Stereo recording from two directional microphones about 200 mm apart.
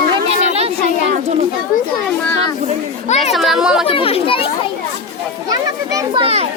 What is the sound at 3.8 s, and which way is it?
Speech, 25° left (ahead or behind).